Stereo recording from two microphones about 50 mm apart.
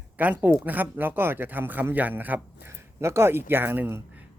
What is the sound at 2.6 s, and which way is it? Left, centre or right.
Speech, right.